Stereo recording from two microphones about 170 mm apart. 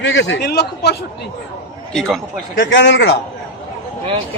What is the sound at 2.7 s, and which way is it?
Speech, 90° left.